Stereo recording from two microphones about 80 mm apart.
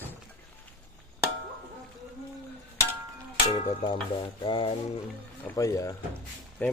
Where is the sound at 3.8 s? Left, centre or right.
Left.